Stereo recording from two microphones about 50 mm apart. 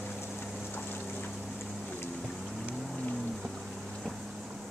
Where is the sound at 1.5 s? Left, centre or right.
Centre.